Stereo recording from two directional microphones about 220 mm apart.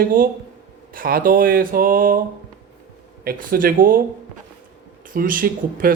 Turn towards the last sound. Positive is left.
turn(degrees=-40)  # may be behind; listen again after turning